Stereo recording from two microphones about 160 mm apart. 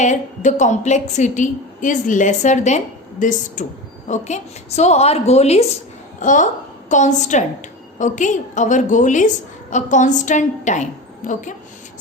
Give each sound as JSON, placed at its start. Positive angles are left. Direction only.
{"t": 0.0, "sound": "a woman's voice", "side_deg": 50}